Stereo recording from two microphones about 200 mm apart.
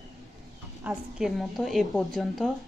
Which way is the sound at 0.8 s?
5° right (ahead or behind).